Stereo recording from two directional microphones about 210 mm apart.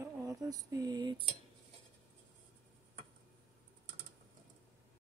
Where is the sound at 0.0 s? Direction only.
15° right (ahead or behind).